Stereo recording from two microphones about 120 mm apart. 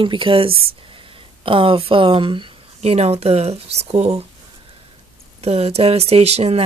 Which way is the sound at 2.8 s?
60° right (ahead or behind).